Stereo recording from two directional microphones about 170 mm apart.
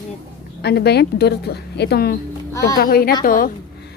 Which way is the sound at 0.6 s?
75° left (ahead or behind).